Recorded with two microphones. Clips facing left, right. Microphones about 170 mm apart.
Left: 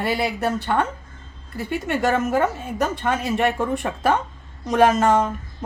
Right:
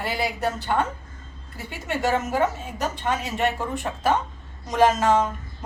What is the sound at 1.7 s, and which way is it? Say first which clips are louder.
Speech: left 3 dB; 55° left (ahead or behind).